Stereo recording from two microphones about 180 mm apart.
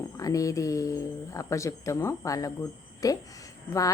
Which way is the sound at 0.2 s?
20° left (ahead or behind).